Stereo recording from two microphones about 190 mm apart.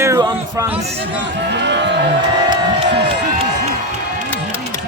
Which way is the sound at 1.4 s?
65° right (ahead or behind).